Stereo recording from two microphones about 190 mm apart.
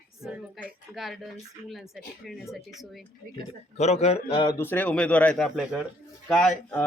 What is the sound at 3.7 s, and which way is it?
Speech, 35° left (ahead or behind).